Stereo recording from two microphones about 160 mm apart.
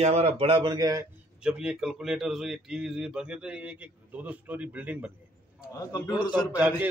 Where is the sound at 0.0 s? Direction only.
40° right (ahead or behind); by 1.0 s 25° right (ahead or behind).